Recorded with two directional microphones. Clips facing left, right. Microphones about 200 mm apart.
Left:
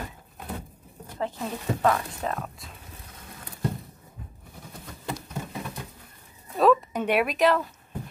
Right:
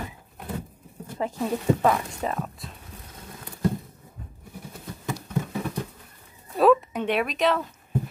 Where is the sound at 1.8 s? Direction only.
15° right (ahead or behind).